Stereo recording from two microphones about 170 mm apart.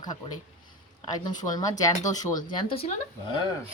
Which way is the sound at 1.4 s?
25° left (ahead or behind).